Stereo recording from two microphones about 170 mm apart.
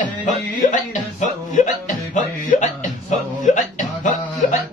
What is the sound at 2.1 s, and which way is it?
Music, 45° left (ahead or behind).